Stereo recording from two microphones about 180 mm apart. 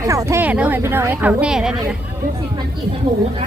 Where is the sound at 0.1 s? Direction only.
15° right (ahead or behind).